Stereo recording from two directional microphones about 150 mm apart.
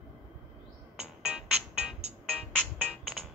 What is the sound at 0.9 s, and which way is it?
Music, 5° right (ahead or behind).